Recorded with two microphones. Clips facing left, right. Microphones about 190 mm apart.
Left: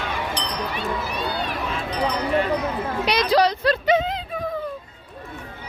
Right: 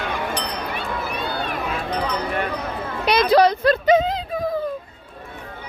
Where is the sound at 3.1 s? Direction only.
55° right (ahead or behind).